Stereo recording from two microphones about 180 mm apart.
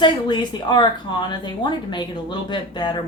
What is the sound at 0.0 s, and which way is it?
Speech, 25° left (ahead or behind).